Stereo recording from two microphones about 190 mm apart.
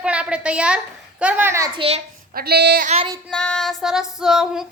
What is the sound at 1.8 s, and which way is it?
Speech, 30° right (ahead or behind).